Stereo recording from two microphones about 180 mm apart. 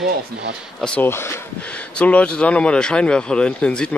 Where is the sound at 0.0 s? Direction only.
70° right (ahead or behind).